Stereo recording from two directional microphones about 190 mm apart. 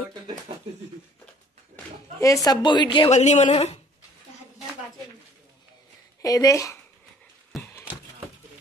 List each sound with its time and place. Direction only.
2.1 s speech: 15° left (ahead or behind)
3.1 s a woman's voice: 35° left (ahead or behind)
6.2 s speech: 20° left (ahead or behind)